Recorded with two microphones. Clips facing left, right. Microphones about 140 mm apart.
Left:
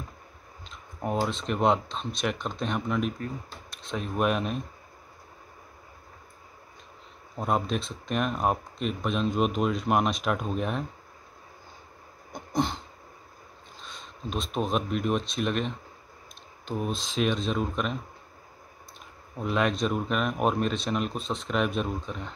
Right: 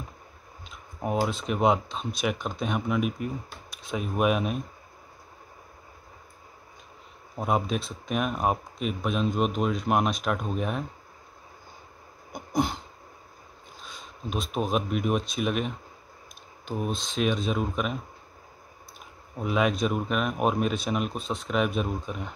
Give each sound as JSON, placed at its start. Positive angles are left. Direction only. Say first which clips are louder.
{"t": 0.7, "sound": "speech", "louder": "right 1 dB", "side_deg": -5}
{"t": 7.3, "sound": "speech", "louder": "right 1 dB", "side_deg": -5}
{"t": 12.3, "sound": "a sound", "louder": "right 1 dB", "side_deg": -10}
{"t": 13.7, "sound": "speech", "louder": "even", "side_deg": -5}
{"t": 19.3, "sound": "speech", "louder": "right 1 dB", "side_deg": -5}